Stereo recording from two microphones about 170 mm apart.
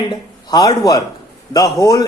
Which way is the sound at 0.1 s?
20° left (ahead or behind).